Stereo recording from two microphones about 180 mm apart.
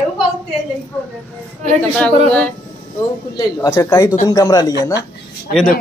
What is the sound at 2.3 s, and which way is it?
Speech, 5° left (ahead or behind).